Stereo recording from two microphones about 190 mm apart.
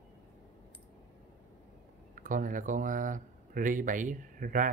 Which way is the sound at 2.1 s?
45° right (ahead or behind).